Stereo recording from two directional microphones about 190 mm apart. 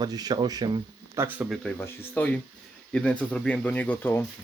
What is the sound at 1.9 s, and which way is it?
Speech, 10° left (ahead or behind).